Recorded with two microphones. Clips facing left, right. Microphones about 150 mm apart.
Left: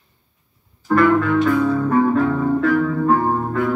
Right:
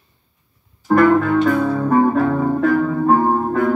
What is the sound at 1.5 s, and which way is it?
Music, 30° right (ahead or behind).